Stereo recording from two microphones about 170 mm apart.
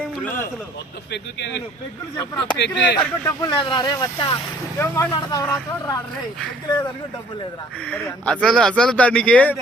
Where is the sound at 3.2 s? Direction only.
20° left (ahead or behind).